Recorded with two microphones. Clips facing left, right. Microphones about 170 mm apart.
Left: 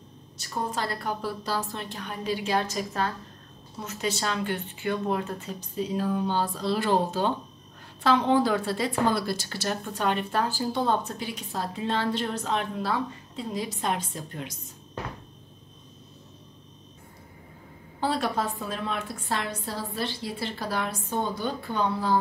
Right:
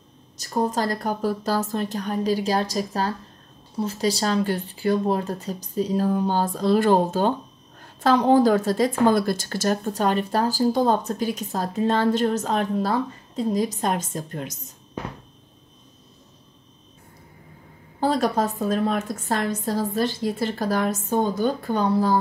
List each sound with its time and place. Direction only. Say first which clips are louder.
0.4 s a woman's voice: right 7 dB; 40° right (ahead or behind)
18.0 s a woman's voice: right 6 dB; 40° right (ahead or behind)